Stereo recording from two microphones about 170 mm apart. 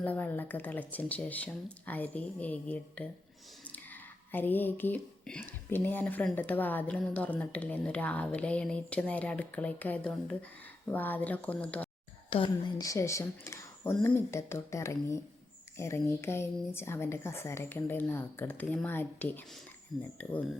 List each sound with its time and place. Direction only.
0.0 s speech: 10° left (ahead or behind)
4.3 s speech: 10° left (ahead or behind)
12.3 s speech: 30° left (ahead or behind)
12.8 s speech: 20° left (ahead or behind)
19.9 s speech: centre (ahead or behind)